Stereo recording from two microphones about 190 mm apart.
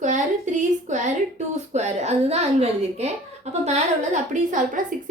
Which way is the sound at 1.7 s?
35° right (ahead or behind).